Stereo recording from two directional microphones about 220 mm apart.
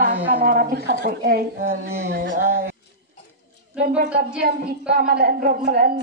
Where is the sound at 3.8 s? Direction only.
45° right (ahead or behind).